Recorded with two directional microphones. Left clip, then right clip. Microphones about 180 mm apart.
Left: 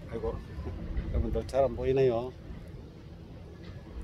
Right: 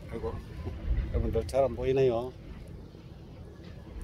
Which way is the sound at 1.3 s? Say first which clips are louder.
Even; 35° right (ahead or behind).